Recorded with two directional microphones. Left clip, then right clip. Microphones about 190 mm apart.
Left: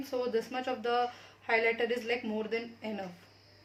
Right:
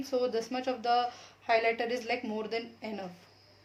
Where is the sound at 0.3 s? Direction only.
35° right (ahead or behind).